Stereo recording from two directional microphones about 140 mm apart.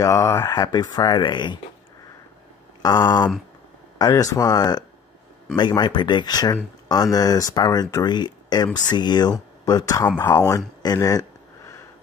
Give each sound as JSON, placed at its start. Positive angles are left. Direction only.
{"t": 0.0, "sound": "speech", "side_deg": 20}
{"t": 2.8, "sound": "speech", "side_deg": 30}
{"t": 10.8, "sound": "a sound", "side_deg": 25}